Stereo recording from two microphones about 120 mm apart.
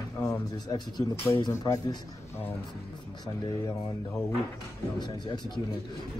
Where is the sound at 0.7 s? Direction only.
35° left (ahead or behind).